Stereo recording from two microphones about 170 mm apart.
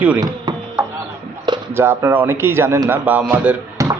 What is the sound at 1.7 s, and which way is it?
A man's voice, 15° right (ahead or behind).